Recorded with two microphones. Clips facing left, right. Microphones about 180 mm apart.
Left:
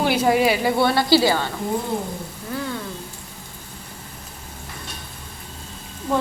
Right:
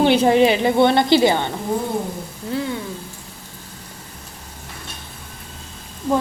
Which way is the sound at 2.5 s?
20° right (ahead or behind).